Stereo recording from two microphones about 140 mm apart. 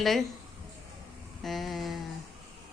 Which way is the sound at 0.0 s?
Centre (ahead or behind).